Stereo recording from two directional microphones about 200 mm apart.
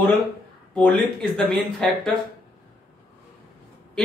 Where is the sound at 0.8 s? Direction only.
5° left (ahead or behind).